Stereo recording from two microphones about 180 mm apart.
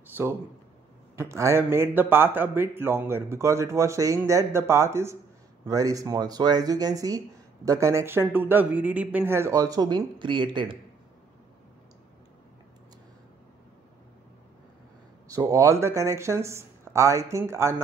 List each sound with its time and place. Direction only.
0.0 s a sound: 10° right (ahead or behind)
1.1 s speech: 15° right (ahead or behind)
15.2 s speech: 20° right (ahead or behind)